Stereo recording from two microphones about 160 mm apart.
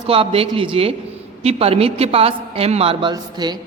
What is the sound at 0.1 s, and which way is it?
A man's voice, 35° right (ahead or behind).